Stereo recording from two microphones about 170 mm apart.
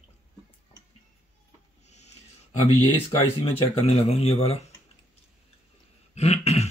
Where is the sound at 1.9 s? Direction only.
40° left (ahead or behind).